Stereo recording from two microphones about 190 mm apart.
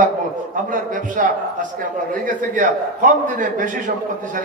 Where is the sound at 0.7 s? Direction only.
45° right (ahead or behind).